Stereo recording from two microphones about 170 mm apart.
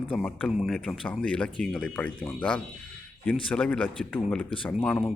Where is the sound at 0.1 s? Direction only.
5° left (ahead or behind).